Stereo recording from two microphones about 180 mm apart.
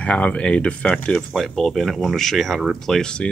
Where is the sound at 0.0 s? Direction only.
5° left (ahead or behind).